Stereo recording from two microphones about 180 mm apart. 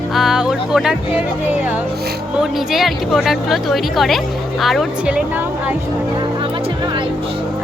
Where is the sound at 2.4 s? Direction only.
Centre (ahead or behind).